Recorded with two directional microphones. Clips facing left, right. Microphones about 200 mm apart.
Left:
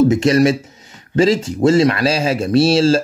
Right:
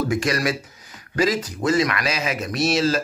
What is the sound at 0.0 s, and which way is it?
Speech, 25° left (ahead or behind).